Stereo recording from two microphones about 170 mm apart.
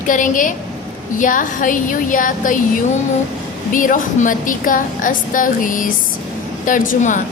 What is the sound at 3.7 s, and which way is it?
A woman's voice, 50° left (ahead or behind).